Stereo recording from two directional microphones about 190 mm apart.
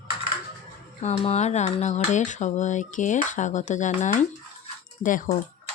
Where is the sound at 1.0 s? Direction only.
35° left (ahead or behind).